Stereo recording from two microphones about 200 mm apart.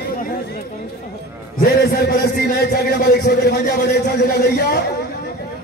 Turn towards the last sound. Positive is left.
turn(degrees=55)  # may be behind; listen again after turning